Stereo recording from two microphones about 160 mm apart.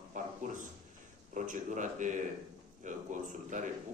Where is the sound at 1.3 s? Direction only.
50° right (ahead or behind).